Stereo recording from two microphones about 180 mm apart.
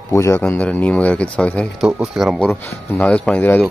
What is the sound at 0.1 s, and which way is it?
Speech, 15° left (ahead or behind).